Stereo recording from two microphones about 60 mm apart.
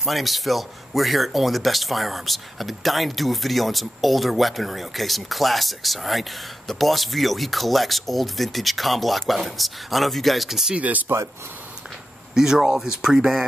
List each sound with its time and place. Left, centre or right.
0.0 s speech: centre
10.8 s speech: right
12.4 s speech: centre